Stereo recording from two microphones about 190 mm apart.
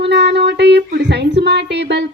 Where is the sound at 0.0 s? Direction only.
65° right (ahead or behind).